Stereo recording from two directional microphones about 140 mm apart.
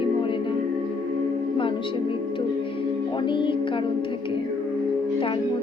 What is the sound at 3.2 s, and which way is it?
Speech, 35° left (ahead or behind).